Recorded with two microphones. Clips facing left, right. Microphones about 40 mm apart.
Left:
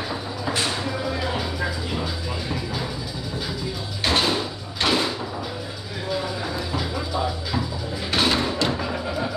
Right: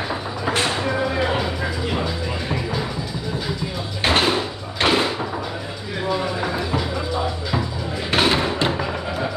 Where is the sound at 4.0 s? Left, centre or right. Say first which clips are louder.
Right 3 dB; right.